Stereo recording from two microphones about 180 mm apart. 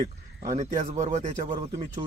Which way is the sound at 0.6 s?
40° right (ahead or behind).